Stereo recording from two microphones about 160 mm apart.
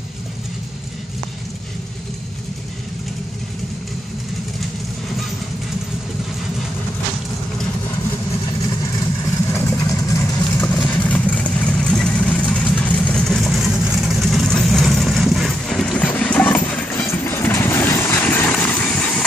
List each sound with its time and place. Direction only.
9.2 s vehicle: 15° left (ahead or behind)